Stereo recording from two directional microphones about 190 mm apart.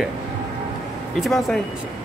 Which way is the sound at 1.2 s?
Centre (ahead or behind).